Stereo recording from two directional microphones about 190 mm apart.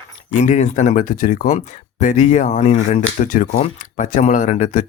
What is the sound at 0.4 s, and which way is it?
Speech, 40° left (ahead or behind).